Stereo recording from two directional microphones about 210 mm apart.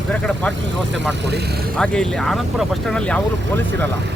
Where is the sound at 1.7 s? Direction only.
5° left (ahead or behind).